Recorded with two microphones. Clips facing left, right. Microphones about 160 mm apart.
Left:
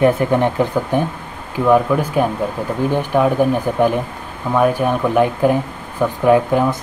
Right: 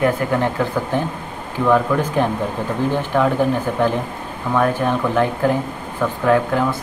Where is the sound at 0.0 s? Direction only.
20° left (ahead or behind).